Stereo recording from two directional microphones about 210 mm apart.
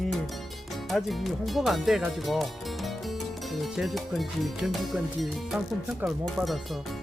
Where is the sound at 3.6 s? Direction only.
Centre (ahead or behind).